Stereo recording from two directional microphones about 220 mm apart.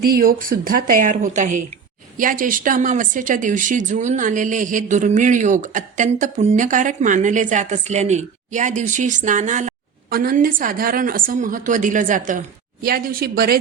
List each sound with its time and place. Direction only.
0.0 s a woman's voice: 40° right (ahead or behind)